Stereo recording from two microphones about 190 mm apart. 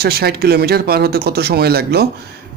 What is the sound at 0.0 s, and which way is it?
A man's voice, 55° right (ahead or behind).